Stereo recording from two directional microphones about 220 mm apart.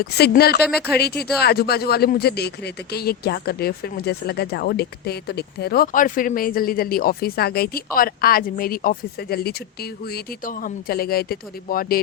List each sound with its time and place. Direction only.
0.0 s speech: 45° left (ahead or behind)